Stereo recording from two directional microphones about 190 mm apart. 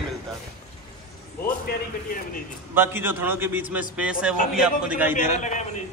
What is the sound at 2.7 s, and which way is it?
A man's voice, 10° right (ahead or behind).